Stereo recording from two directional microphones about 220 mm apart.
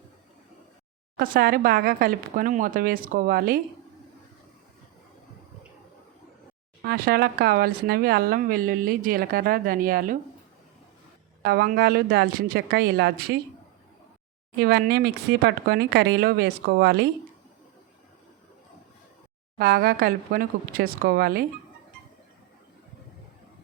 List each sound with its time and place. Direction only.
1.1 s speech: 40° right (ahead or behind)
6.8 s speech: 45° right (ahead or behind)
11.4 s speech: 45° right (ahead or behind)
14.6 s speech: 45° right (ahead or behind)
19.5 s speech: 40° right (ahead or behind)